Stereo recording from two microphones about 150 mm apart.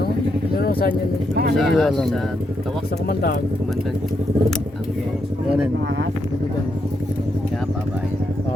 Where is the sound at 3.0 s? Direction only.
90° left.